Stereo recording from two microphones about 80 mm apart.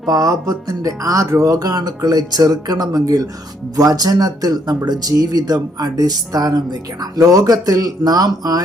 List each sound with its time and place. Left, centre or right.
0.1 s speech: right